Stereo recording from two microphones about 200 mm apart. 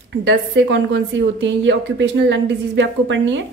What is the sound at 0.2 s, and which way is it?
A woman's voice, 60° right (ahead or behind).